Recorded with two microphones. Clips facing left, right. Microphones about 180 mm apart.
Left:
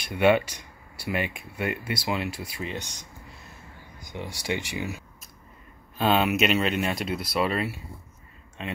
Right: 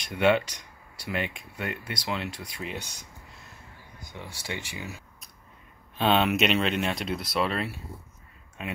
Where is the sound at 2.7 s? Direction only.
10° right (ahead or behind).